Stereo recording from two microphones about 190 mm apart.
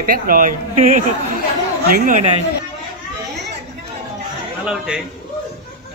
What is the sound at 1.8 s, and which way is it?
Speech, 45° right (ahead or behind).